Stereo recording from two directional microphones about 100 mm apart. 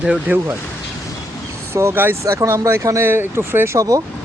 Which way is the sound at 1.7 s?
25° right (ahead or behind).